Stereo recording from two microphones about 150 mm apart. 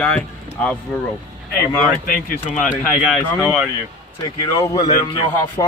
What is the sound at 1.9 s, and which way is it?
Speech, 70° left (ahead or behind).